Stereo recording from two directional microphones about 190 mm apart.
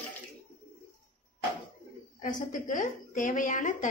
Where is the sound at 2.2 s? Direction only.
45° left (ahead or behind).